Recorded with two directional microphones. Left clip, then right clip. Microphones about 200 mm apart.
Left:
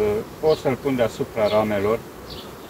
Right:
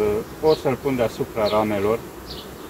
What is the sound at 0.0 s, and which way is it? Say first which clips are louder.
Speech: right 1 dB; 10° right (ahead or behind).